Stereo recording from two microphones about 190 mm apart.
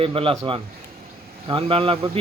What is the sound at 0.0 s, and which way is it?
Speech, 30° right (ahead or behind).